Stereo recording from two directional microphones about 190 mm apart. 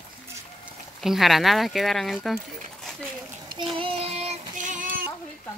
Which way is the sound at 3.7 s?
30° right (ahead or behind).